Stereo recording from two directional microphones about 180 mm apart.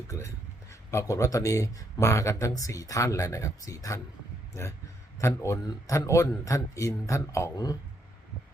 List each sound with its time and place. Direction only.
0.1 s speech: 15° left (ahead or behind)